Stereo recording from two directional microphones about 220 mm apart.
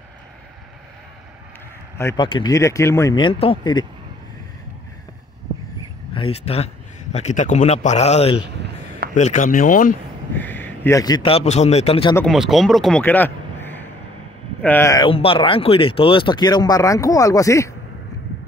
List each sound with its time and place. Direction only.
2.0 s speech: 15° left (ahead or behind)
6.1 s speech: 25° left (ahead or behind)
10.3 s speech: 10° left (ahead or behind); by 12.2 s 25° left (ahead or behind)
12.2 s a man's voice: centre (ahead or behind)
15.0 s speech: 25° left (ahead or behind)